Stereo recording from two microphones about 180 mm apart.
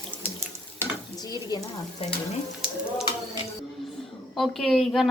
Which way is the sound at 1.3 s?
20° left (ahead or behind).